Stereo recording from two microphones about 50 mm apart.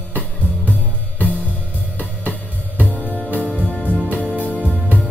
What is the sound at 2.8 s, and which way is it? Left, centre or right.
Music, left.